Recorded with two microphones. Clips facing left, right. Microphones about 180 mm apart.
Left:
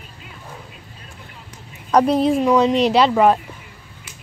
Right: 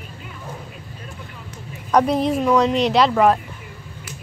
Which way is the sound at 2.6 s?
35° left (ahead or behind).